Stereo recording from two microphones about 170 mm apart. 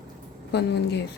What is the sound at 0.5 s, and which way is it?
Speech, 80° left.